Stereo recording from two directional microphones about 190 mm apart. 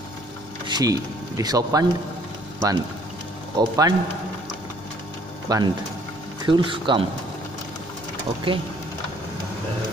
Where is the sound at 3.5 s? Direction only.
20° right (ahead or behind).